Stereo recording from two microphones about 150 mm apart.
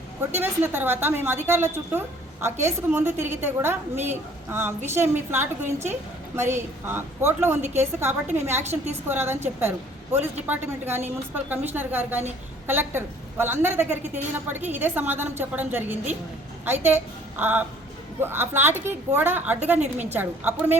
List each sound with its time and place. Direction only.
0.3 s a woman's voice: 15° right (ahead or behind)